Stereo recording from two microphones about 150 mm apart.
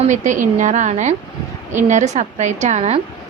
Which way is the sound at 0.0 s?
55° right (ahead or behind).